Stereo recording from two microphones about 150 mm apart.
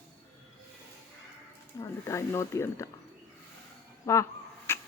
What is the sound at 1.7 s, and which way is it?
Speech, 20° left (ahead or behind).